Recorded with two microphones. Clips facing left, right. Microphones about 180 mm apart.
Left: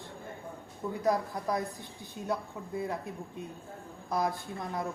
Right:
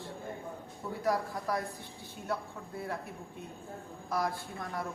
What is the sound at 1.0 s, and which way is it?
A woman's voice, 20° left (ahead or behind).